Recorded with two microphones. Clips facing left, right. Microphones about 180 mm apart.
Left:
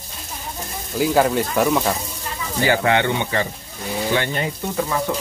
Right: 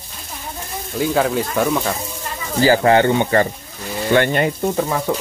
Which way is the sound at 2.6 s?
35° right (ahead or behind).